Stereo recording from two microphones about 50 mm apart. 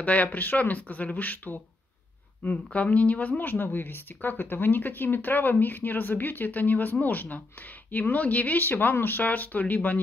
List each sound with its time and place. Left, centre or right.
0.0 s speech: left
8.5 s speech: left